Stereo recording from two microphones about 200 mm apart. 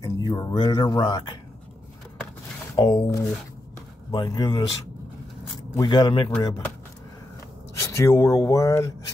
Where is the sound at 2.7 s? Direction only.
20° left (ahead or behind).